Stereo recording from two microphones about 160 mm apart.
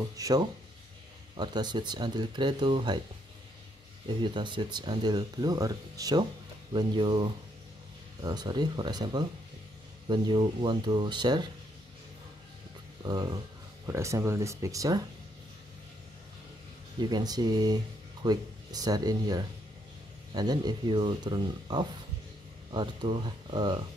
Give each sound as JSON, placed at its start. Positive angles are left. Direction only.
{"t": 0.0, "sound": "speech", "side_deg": -25}
{"t": 4.2, "sound": "speech", "side_deg": -30}
{"t": 13.0, "sound": "speech", "side_deg": -25}
{"t": 17.0, "sound": "speech", "side_deg": -25}